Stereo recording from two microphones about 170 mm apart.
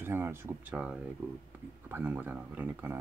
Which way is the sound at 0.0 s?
15° right (ahead or behind).